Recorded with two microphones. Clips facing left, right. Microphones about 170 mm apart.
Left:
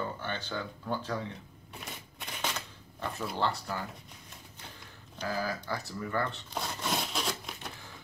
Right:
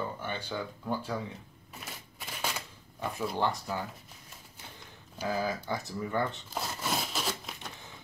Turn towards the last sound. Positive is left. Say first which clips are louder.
# even
turn(degrees=0)  # may be behind; listen again after turning